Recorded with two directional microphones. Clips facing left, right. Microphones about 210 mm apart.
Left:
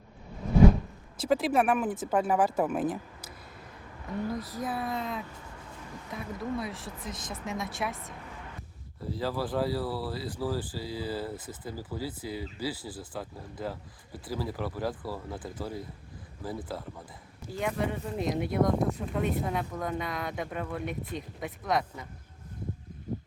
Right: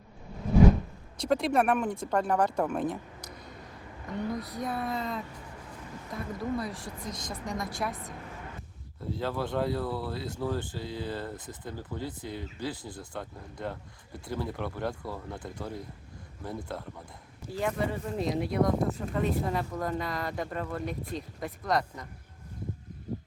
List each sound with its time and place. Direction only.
1.2 s speech: 5° left (ahead or behind)